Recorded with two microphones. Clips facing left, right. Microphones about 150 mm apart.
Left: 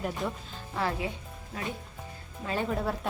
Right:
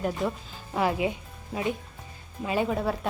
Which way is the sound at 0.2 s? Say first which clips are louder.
Right 5 dB; centre (ahead or behind).